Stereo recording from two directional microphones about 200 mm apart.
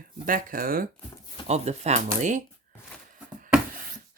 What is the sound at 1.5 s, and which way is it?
Speech, 35° right (ahead or behind).